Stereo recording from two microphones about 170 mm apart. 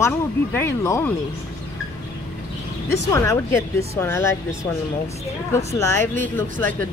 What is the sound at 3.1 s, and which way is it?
Speech, 15° left (ahead or behind).